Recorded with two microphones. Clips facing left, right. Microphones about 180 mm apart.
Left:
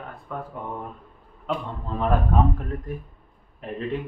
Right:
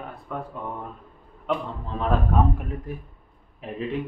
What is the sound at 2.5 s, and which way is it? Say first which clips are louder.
Speech: left 1 dB; 10° right (ahead or behind).